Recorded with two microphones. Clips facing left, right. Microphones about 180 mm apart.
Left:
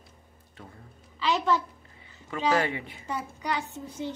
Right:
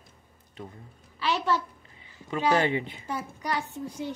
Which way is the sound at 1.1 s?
10° right (ahead or behind).